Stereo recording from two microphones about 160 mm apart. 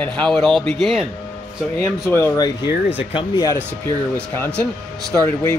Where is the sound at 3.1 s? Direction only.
30° left (ahead or behind).